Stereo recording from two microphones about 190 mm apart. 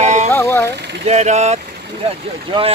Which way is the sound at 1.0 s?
35° right (ahead or behind).